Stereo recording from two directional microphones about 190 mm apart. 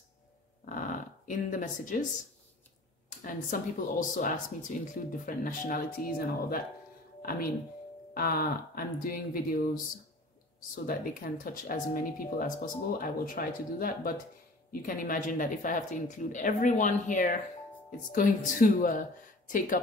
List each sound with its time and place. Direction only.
0.7 s dog: 45° left (ahead or behind)
3.3 s speech: 45° left (ahead or behind)
7.2 s music: 50° left (ahead or behind)
8.1 s speech: 50° left (ahead or behind)
10.7 s speech: 45° left (ahead or behind)